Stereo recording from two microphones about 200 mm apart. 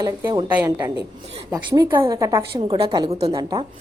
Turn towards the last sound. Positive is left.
turn(degrees=-20)  # may be behind; listen again after turning